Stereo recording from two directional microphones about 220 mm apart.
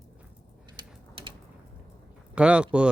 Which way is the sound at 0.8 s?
20° right (ahead or behind).